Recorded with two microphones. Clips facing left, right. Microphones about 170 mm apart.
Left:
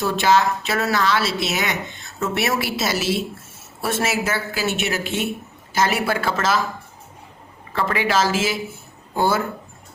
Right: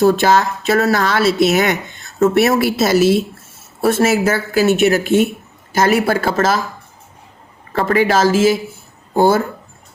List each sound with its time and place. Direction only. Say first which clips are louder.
0.0 s a woman's voice: right 6 dB; 45° right (ahead or behind)
7.7 s a woman's voice: right 7 dB; 45° right (ahead or behind)